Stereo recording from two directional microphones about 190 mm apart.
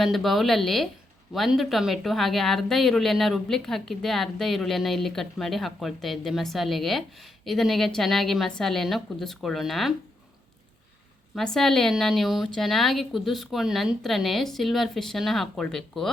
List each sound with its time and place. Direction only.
0.0 s speech: centre (ahead or behind)
11.3 s speech: centre (ahead or behind)